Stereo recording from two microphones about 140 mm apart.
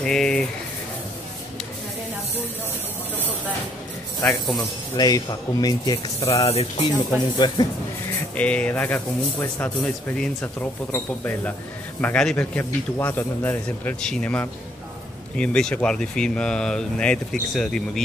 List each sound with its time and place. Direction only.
0.0 s a sound: 5° left (ahead or behind)
4.6 s speech: 25° left (ahead or behind)
6.3 s speech: 45° left (ahead or behind)
7.3 s speech: 30° left (ahead or behind)
8.4 s speech: 10° left (ahead or behind)